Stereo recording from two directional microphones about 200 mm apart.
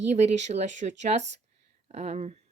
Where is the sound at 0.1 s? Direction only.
35° right (ahead or behind).